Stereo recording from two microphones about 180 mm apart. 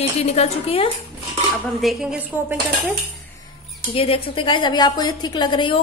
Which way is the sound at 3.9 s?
30° left (ahead or behind).